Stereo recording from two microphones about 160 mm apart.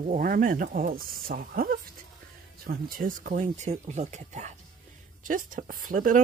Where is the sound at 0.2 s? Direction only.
60° right (ahead or behind).